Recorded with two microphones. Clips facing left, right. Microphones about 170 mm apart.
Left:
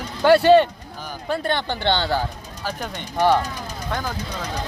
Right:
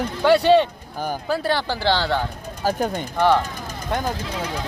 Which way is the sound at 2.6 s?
45° right (ahead or behind).